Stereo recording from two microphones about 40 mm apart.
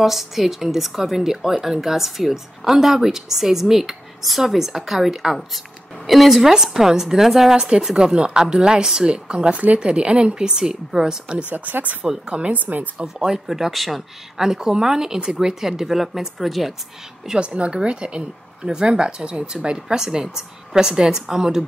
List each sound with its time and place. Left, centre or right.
0.0 s a woman's voice: centre
7.5 s a woman's voice: centre
11.5 s speech: right
12.3 s a woman's voice: right
12.5 s speech: right
12.9 s a woman's voice: centre
17.4 s a woman's voice: right